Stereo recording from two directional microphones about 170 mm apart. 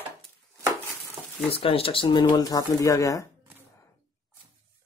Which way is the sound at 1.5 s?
35° left (ahead or behind).